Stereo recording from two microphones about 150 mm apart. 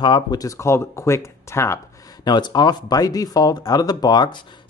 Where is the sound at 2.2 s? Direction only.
30° left (ahead or behind).